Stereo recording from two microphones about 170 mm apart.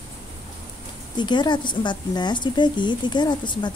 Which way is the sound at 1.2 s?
25° left (ahead or behind).